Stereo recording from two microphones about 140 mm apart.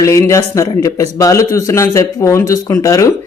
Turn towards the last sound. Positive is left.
turn(degrees=25)  # may be behind; listen again after turning